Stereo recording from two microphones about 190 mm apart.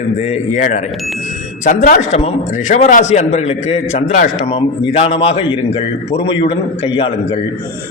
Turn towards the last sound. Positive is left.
turn(degrees=25)  # may be behind; listen again after turning